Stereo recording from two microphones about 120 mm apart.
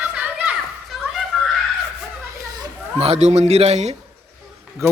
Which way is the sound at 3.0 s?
60° right (ahead or behind).